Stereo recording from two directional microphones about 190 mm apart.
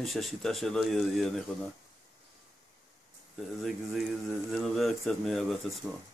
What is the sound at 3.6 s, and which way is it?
Speech, centre (ahead or behind).